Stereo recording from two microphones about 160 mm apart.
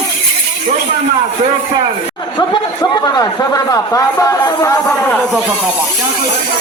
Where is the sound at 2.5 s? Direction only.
25° left (ahead or behind).